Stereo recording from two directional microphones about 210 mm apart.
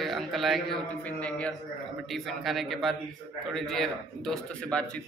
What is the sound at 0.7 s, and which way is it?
A man's voice, 5° left (ahead or behind).